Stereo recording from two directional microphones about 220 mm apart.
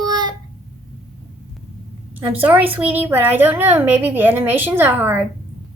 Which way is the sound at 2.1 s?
5° right (ahead or behind).